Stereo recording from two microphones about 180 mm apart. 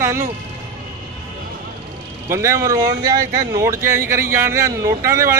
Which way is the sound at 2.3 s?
15° right (ahead or behind).